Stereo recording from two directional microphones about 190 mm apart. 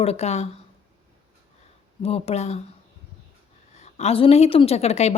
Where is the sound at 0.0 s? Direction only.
35° left (ahead or behind).